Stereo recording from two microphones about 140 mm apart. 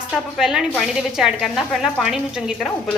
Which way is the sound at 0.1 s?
5° right (ahead or behind).